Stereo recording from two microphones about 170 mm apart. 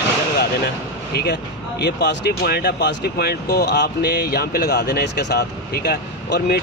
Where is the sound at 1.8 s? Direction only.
85° left.